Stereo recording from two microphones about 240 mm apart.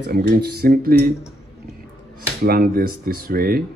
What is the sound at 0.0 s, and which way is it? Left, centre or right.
Speech, right.